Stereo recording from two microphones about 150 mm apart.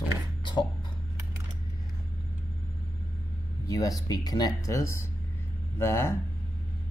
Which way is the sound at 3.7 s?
25° left (ahead or behind).